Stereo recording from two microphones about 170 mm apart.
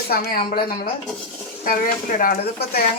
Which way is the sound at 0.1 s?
65° left (ahead or behind).